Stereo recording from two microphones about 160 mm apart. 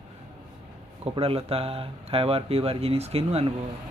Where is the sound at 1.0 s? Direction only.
35° right (ahead or behind).